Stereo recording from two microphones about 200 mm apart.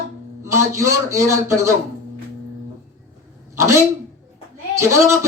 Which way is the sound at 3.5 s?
15° right (ahead or behind).